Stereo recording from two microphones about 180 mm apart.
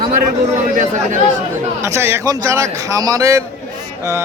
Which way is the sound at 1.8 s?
15° right (ahead or behind).